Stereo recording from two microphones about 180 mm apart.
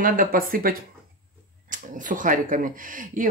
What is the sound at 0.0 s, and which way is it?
Speech, 50° right (ahead or behind).